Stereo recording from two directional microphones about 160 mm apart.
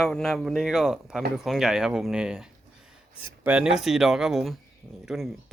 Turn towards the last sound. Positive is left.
turn(degrees=0)  # may be behind; listen again after turning